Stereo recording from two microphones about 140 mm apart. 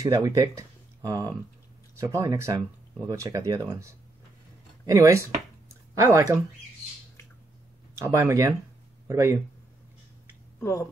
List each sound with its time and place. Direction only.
0.0 s speech: 25° right (ahead or behind)
5.7 s a sound: 20° right (ahead or behind)
7.9 s speech: 20° right (ahead or behind)
10.6 s speech: 20° left (ahead or behind)